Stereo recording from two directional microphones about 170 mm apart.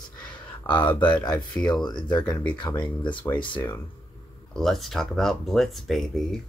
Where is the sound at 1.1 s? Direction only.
20° left (ahead or behind).